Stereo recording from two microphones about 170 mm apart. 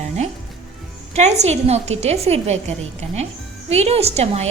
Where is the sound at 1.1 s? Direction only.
40° right (ahead or behind).